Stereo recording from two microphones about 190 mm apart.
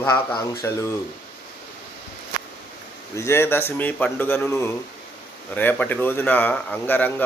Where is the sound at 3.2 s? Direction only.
15° left (ahead or behind).